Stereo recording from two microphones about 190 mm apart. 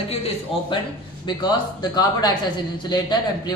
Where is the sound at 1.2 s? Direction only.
20° left (ahead or behind).